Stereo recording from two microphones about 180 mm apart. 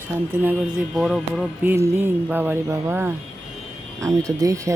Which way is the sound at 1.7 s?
15° right (ahead or behind).